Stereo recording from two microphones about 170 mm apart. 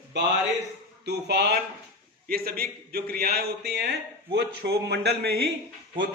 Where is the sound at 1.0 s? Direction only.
75° right (ahead or behind).